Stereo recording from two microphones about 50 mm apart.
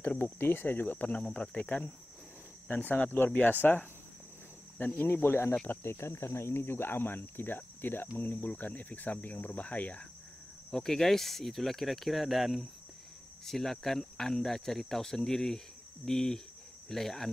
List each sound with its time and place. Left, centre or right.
0.2 s speech: left
1.3 s cricket: left
2.7 s speech: left
3.6 s cricket: centre
4.9 s speech: left
10.7 s speech: centre